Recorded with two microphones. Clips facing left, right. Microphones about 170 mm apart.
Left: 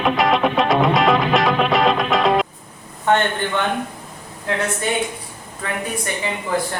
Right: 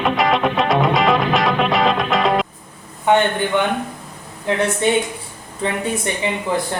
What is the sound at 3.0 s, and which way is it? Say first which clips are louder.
Speech: right 2 dB; 15° right (ahead or behind).